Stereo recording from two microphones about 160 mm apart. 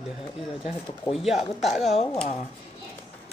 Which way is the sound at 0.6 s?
Centre (ahead or behind).